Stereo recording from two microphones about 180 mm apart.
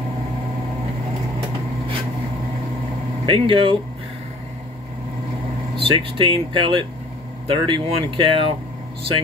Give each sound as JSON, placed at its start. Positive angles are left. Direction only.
{"t": 3.3, "sound": "speech", "side_deg": -30}
{"t": 5.8, "sound": "speech", "side_deg": -30}